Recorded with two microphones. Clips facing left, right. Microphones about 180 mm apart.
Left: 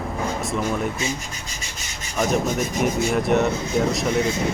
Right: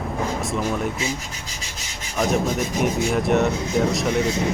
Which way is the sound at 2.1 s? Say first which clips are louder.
Even; centre (ahead or behind).